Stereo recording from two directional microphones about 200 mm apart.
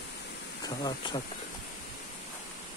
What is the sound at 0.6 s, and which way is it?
Speech, 20° left (ahead or behind).